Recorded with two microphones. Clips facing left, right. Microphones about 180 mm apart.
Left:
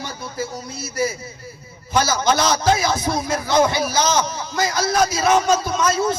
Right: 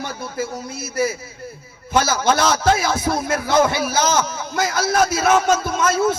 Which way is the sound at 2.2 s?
55° right (ahead or behind).